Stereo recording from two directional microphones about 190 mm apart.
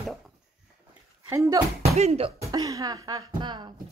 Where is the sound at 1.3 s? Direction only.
15° right (ahead or behind).